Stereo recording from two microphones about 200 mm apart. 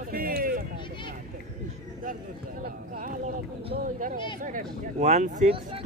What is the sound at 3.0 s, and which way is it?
Speech, 40° right (ahead or behind).